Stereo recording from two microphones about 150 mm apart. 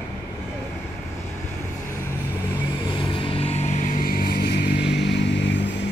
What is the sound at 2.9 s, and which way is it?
Vehicle, 30° left (ahead or behind).